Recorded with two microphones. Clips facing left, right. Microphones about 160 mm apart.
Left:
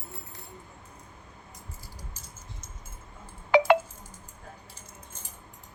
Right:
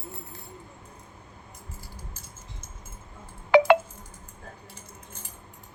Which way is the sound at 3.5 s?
70° right (ahead or behind).